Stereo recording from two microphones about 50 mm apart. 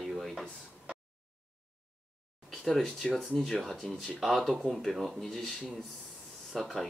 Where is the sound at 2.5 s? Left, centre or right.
Centre.